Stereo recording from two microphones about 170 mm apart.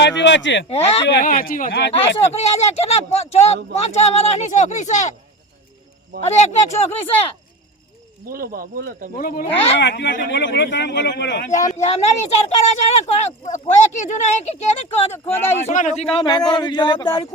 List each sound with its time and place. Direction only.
0.0 s speech: 90° left
0.7 s speech: 35° left (ahead or behind)
1.2 s speech: 55° left (ahead or behind)
2.3 s speech: 40° left (ahead or behind)
6.2 s speech: 40° left (ahead or behind)
8.3 s speech: 60° right (ahead or behind)
9.1 s speech: 60° left (ahead or behind)
9.8 s speech: 90° left
11.6 s speech: 40° left (ahead or behind)
15.3 s speech: 15° left (ahead or behind)
15.6 s speech: 45° left (ahead or behind)
16.1 s speech: 25° left (ahead or behind)